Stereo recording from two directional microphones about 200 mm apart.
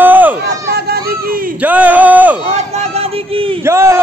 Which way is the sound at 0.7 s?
50° right (ahead or behind).